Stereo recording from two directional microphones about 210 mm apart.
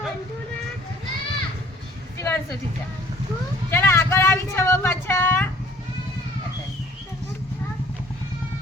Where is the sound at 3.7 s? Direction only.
10° left (ahead or behind).